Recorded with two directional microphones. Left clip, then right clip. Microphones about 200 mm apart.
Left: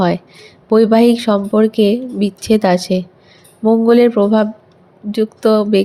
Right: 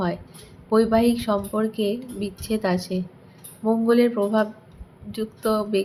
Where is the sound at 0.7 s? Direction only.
35° left (ahead or behind).